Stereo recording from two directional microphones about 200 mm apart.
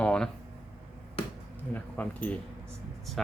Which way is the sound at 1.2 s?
30° left (ahead or behind).